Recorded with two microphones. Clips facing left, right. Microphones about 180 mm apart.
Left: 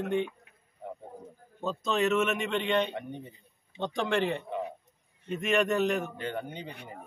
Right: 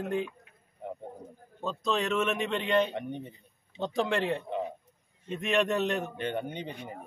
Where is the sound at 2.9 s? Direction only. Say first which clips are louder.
Right 3 dB; 20° right (ahead or behind).